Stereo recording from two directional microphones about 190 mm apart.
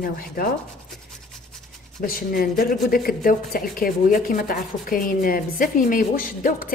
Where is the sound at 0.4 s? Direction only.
50° left (ahead or behind).